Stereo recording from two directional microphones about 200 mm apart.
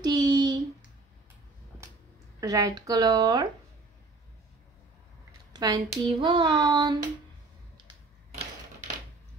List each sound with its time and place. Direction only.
0.0 s a sound: 20° right (ahead or behind)
2.4 s speech: 15° right (ahead or behind)
5.5 s speech: 20° right (ahead or behind)